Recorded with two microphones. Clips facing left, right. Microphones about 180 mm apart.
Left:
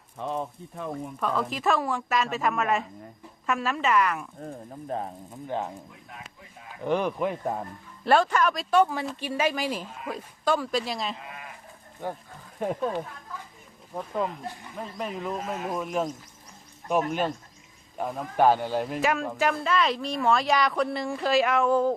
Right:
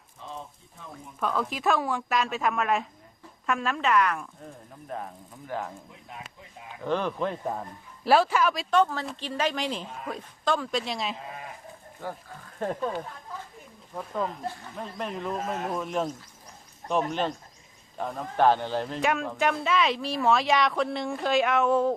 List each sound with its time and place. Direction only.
0.2 s speech: 60° left (ahead or behind)
1.2 s speech: centre (ahead or behind)
4.4 s speech: 35° left (ahead or behind)
6.8 s a man's voice: 15° left (ahead or behind)
8.0 s speech: 5° right (ahead or behind)
8.7 s a man's voice: 10° left (ahead or behind)
12.0 s a man's voice: 15° left (ahead or behind)
12.5 s speech: 5° left (ahead or behind)
14.0 s speech: 5° left (ahead or behind)
14.4 s a man's voice: 15° left (ahead or behind)
14.8 s a man's voice: centre (ahead or behind)